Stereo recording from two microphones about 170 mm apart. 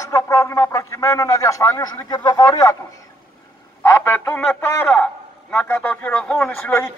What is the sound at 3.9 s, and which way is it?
A man's voice, 15° left (ahead or behind).